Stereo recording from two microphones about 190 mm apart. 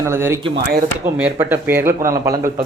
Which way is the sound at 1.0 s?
10° right (ahead or behind).